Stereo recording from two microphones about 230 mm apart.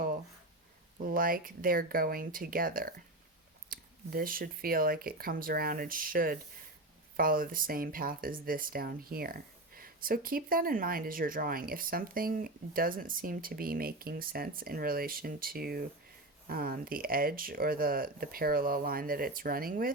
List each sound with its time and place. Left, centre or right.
1.0 s speech: right